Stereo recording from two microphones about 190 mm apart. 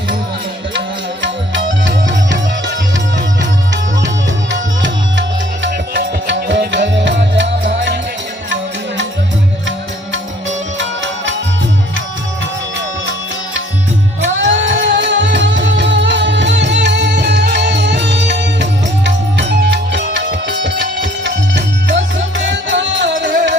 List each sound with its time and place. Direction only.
1.2 s music: 75° right (ahead or behind)
4.5 s music: 75° right (ahead or behind)
10.8 s music: 75° right (ahead or behind)
14.3 s music: 75° right (ahead or behind)